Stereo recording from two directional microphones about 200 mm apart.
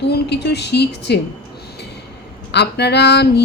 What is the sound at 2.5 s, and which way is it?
Speech, 55° left (ahead or behind).